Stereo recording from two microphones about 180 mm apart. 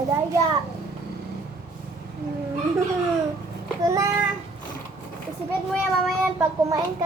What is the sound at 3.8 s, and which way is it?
Speech, 20° right (ahead or behind).